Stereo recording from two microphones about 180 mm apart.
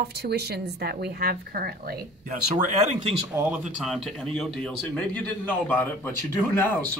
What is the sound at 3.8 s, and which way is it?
Speech, centre (ahead or behind).